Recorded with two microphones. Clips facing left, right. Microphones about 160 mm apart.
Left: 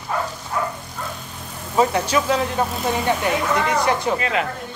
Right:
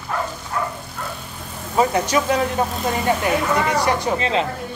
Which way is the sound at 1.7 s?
15° right (ahead or behind).